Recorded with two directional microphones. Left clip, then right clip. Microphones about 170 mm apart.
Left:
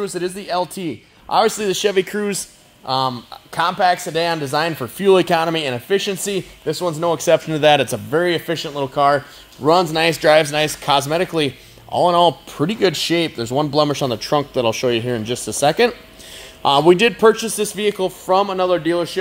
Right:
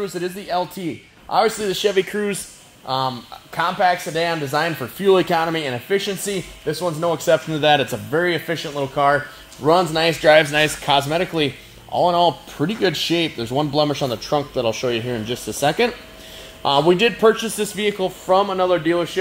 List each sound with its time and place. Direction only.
0.0 s speech: 45° left (ahead or behind)
2.9 s speech: 45° left (ahead or behind)